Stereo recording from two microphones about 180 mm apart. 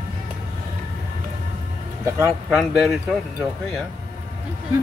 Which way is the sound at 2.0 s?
15° right (ahead or behind).